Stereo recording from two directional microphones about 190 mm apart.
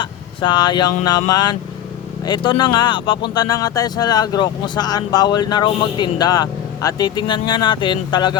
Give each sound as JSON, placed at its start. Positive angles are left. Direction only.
{"t": 0.0, "sound": "speech", "side_deg": 25}